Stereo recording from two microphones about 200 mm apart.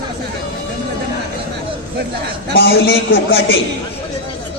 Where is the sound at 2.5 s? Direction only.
55° left (ahead or behind).